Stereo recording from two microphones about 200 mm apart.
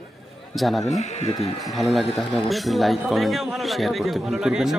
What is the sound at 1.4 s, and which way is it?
A man's voice, centre (ahead or behind).